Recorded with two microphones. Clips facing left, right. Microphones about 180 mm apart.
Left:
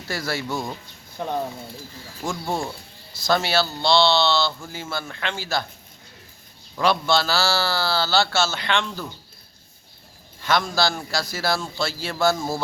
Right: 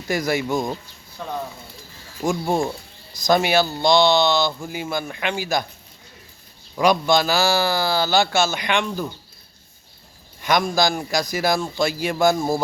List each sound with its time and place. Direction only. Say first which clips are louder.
0.1 s speech: right 6 dB; 15° right (ahead or behind)
1.2 s speech: left 3 dB; 20° left (ahead or behind)
2.2 s speech: right 6 dB; 15° right (ahead or behind)
6.7 s speech: right 3 dB; 15° right (ahead or behind)
10.4 s speech: right 3 dB; 15° right (ahead or behind)